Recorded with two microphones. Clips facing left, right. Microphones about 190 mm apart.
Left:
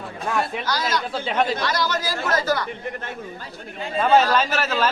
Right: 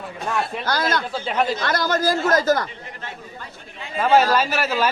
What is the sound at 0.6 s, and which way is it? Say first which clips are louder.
Speech: right 2 dB; 55° right (ahead or behind).